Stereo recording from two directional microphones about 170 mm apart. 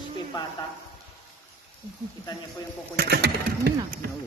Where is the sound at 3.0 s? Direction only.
70° right (ahead or behind).